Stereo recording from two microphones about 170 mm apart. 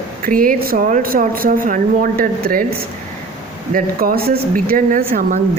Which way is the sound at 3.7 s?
55° right (ahead or behind).